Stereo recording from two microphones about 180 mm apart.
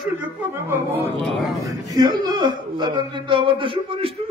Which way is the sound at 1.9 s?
20° right (ahead or behind).